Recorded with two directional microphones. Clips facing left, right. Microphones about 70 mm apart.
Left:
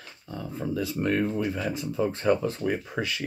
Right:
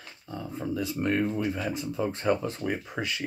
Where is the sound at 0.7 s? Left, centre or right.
Centre.